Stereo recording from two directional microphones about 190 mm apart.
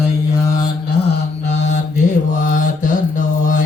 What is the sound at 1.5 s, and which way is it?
Mantra, 40° left (ahead or behind).